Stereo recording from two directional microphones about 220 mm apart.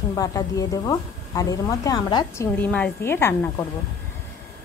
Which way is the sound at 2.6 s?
5° left (ahead or behind).